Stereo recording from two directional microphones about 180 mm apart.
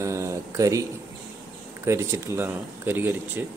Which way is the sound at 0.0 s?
15° right (ahead or behind).